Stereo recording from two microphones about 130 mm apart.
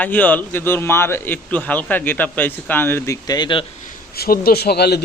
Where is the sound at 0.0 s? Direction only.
15° left (ahead or behind).